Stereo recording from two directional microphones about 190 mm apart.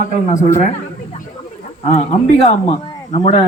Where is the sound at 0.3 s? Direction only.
40° left (ahead or behind).